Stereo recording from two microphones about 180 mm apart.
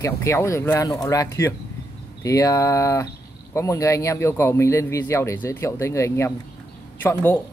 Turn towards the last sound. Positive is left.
turn(degrees=10)  # may be behind; listen again after turning